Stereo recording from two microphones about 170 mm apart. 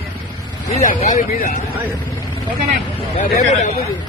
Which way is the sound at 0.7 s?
40° left (ahead or behind).